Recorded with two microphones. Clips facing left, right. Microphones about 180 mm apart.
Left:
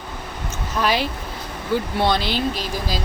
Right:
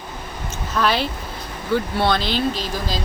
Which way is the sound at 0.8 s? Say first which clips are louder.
Right 1 dB; 15° left (ahead or behind).